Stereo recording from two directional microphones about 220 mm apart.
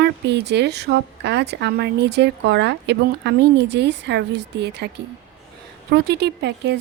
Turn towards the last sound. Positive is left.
turn(degrees=-50)  # may be behind; listen again after turning